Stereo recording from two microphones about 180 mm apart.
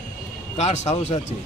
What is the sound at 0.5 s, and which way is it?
Speech, 35° left (ahead or behind).